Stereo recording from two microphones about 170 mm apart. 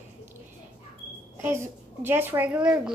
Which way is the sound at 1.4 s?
15° right (ahead or behind).